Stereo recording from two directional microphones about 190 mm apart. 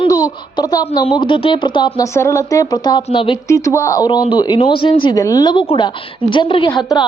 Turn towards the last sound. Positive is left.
turn(degrees=20)  # may be behind; listen again after turning